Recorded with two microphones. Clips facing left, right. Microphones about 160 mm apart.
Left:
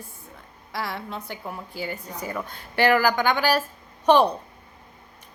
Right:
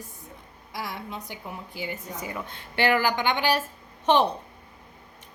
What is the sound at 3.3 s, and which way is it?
Speech, 20° right (ahead or behind).